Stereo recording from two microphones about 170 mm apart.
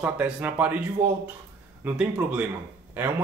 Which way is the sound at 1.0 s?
50° right (ahead or behind).